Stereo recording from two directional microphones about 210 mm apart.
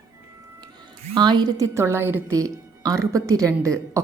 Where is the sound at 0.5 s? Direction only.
20° right (ahead or behind).